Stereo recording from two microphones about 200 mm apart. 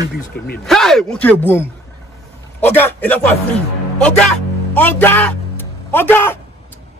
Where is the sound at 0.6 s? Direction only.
Centre (ahead or behind).